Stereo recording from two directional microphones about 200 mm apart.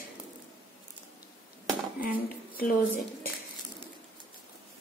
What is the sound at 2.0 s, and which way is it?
Speech, 45° left (ahead or behind).